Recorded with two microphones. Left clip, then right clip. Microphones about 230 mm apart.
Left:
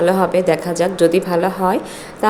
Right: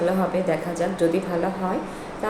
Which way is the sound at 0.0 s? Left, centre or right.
Left.